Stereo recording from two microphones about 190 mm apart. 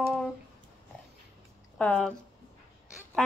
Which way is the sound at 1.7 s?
5° left (ahead or behind).